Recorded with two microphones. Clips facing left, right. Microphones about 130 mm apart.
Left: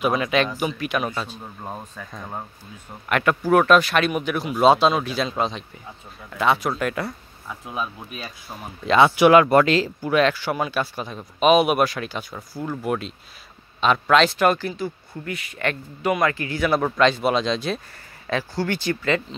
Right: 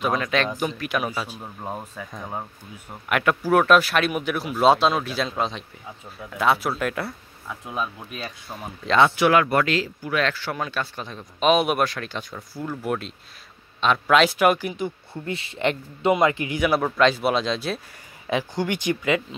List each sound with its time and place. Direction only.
0.0 s speech: 5° left (ahead or behind); by 10.2 s 30° left (ahead or behind)
10.2 s speech: 15° left (ahead or behind); by 16.8 s 10° right (ahead or behind)
16.8 s speech: centre (ahead or behind)
18.2 s speech: 15° right (ahead or behind)